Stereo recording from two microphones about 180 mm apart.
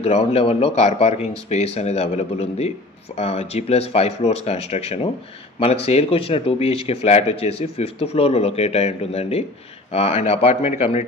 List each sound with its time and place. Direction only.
0.0 s speech: 35° left (ahead or behind)